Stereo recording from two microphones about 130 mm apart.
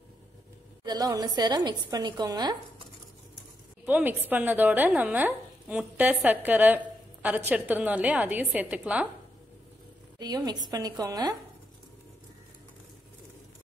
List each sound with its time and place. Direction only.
0.8 s a woman's voice: 30° right (ahead or behind)
3.8 s speech: 15° right (ahead or behind)
10.1 s a woman's voice: 30° right (ahead or behind)